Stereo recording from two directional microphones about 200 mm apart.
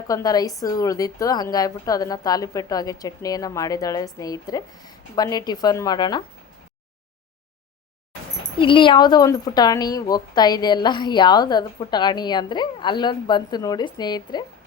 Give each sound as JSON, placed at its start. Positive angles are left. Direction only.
{"t": 0.1, "sound": "a woman's voice", "side_deg": 20}
{"t": 8.5, "sound": "a woman's voice", "side_deg": 25}